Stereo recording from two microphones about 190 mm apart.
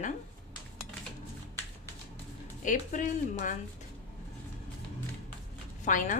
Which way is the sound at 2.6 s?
40° left (ahead or behind).